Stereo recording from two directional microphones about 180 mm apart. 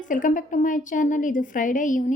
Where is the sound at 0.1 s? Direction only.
45° left (ahead or behind).